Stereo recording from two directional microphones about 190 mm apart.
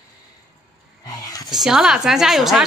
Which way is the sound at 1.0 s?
20° left (ahead or behind).